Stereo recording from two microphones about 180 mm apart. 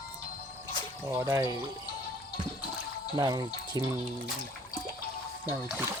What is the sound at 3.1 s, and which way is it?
Speech, 20° right (ahead or behind).